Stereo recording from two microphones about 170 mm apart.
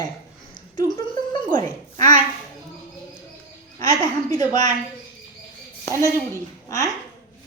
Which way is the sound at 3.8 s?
20° left (ahead or behind).